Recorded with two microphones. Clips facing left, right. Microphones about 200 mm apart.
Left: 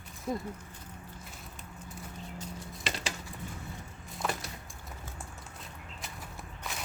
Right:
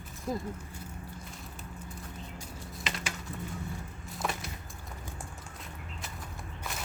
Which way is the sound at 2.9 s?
30° left (ahead or behind).